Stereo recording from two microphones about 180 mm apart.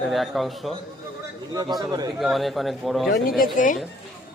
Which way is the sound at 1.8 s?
20° right (ahead or behind).